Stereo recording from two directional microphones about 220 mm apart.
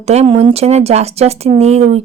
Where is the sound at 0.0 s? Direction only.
30° right (ahead or behind).